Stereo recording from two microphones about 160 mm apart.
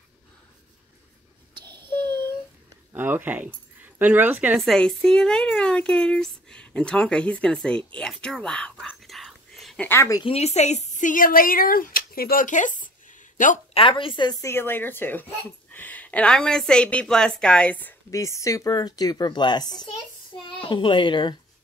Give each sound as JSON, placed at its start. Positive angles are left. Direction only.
{"t": 1.8, "sound": "a sound", "side_deg": -30}
{"t": 2.9, "sound": "speech", "side_deg": -10}
{"t": 4.6, "sound": "a woman's voice", "side_deg": 0}
{"t": 9.8, "sound": "a woman's voice", "side_deg": 20}
{"t": 10.2, "sound": "a woman's voice", "side_deg": 40}
{"t": 13.7, "sound": "a woman's voice", "side_deg": 35}